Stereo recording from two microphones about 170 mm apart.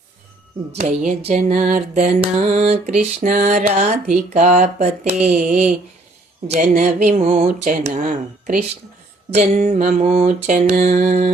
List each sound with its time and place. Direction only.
0.8 s mantra: 45° right (ahead or behind)